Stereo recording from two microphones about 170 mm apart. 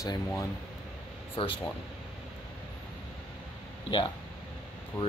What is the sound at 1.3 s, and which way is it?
Speech, 30° left (ahead or behind).